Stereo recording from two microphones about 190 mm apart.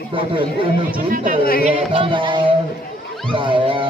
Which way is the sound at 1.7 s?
30° right (ahead or behind).